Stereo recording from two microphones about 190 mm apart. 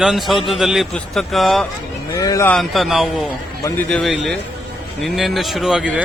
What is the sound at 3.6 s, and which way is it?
Speech, 15° left (ahead or behind).